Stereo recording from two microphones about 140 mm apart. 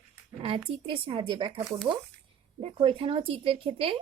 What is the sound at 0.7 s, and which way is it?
A woman's voice, 40° right (ahead or behind).